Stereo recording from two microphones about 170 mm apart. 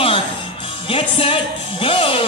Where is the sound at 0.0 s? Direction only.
30° left (ahead or behind).